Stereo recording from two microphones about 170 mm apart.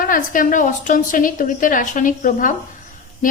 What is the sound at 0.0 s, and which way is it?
A woman's voice, 55° left (ahead or behind).